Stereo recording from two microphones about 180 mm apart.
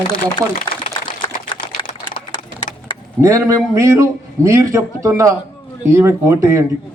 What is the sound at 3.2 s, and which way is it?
A man's voice, 15° right (ahead or behind).